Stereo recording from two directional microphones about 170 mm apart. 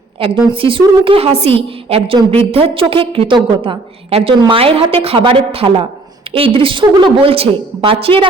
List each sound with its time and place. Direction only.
0.2 s a woman's voice: 30° right (ahead or behind)